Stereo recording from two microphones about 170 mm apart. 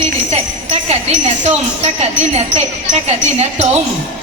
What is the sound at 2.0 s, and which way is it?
Speech, 40° right (ahead or behind).